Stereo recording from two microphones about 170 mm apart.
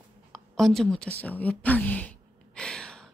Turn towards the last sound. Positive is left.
turn(degrees=5)  # may be behind; listen again after turning